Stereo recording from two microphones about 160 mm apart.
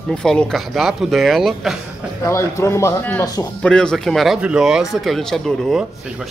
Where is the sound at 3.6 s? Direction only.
5° left (ahead or behind).